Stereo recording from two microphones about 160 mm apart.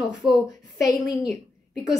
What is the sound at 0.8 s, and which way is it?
Speech, 20° left (ahead or behind).